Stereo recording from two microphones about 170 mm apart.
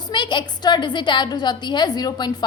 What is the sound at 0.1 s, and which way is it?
A woman's voice, 25° left (ahead or behind).